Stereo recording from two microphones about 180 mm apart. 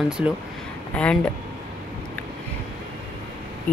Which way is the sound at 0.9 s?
5° left (ahead or behind).